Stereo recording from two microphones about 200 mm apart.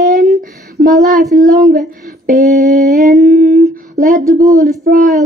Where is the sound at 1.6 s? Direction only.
40° right (ahead or behind).